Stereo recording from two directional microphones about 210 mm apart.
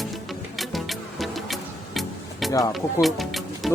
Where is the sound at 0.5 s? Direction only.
Centre (ahead or behind).